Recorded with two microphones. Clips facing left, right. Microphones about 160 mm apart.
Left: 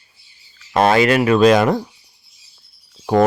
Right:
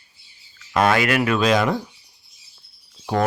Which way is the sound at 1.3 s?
50° left (ahead or behind).